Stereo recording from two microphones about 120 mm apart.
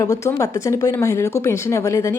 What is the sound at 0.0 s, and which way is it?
A woman's voice, 25° left (ahead or behind).